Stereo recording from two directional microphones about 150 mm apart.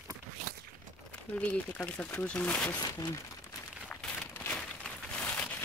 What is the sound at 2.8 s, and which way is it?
Speech, 30° left (ahead or behind).